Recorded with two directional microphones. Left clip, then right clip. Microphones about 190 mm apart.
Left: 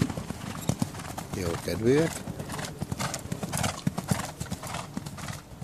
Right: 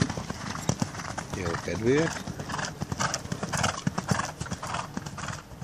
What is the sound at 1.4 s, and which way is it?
Speech, 25° left (ahead or behind).